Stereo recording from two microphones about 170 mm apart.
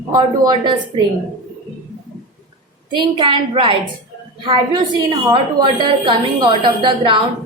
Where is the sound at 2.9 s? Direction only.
25° right (ahead or behind).